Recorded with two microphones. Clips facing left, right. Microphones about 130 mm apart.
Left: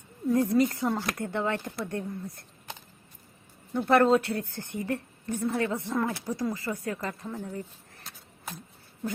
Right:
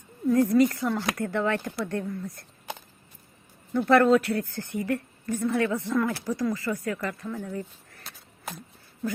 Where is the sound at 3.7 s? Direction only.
20° left (ahead or behind).